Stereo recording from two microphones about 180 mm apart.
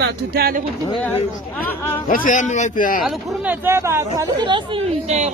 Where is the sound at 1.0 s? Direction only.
10° left (ahead or behind).